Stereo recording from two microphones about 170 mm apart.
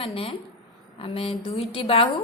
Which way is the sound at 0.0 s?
35° left (ahead or behind).